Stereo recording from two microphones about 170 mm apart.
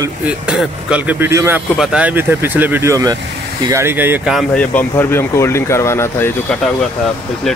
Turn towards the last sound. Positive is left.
turn(degrees=5)  # may be behind; listen again after turning